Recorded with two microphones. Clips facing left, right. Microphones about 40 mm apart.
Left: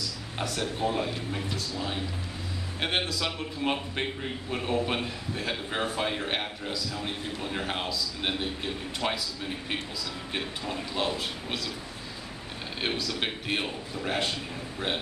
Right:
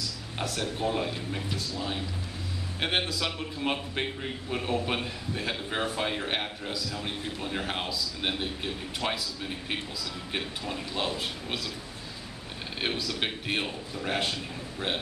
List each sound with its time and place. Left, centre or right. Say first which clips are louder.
0.4 s a man's voice: left 1 dB; centre
10.6 s a man's voice: left 1 dB; centre
12.8 s a man's voice: even; centre